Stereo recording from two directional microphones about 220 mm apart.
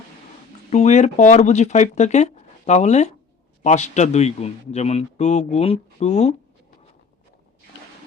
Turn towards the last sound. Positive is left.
turn(degrees=30)  # may be behind; listen again after turning